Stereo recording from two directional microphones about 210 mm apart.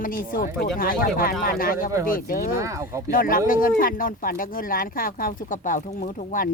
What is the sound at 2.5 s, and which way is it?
Speech, 15° right (ahead or behind).